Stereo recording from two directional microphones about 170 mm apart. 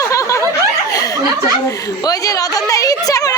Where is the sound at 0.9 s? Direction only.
20° left (ahead or behind).